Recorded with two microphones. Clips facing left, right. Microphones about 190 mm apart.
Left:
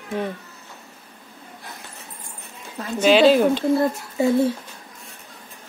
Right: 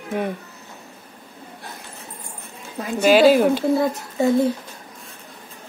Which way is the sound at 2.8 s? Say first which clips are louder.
Right 1 dB; 10° right (ahead or behind).